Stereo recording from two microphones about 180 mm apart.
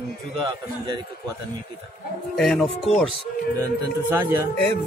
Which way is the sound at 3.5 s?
20° right (ahead or behind).